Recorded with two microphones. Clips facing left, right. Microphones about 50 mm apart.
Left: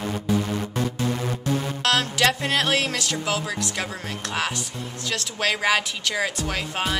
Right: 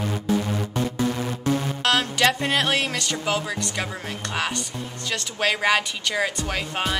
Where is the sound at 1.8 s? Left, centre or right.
Centre.